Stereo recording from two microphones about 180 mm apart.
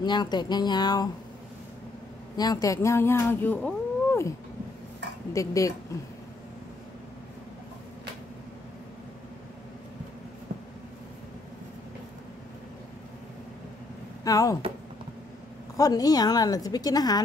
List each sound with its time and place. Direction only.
0.0 s a woman's voice: 25° left (ahead or behind)
2.3 s speech: 20° left (ahead or behind)
5.3 s speech: 20° left (ahead or behind)
14.2 s a woman's voice: 20° left (ahead or behind)
15.7 s a woman's voice: 20° left (ahead or behind)